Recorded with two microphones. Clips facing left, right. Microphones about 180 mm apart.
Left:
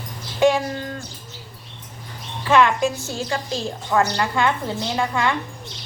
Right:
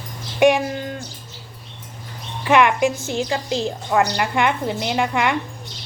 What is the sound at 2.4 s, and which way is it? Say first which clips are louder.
A woman's voice: right 1 dB; 15° right (ahead or behind).